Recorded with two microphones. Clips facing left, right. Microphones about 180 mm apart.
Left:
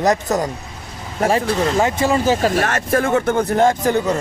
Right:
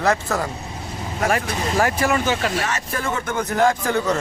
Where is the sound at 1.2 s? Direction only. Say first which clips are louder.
Left 5 dB; 30° left (ahead or behind).